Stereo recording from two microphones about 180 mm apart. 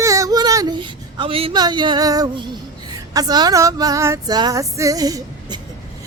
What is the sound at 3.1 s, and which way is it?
A man's voice, 20° right (ahead or behind).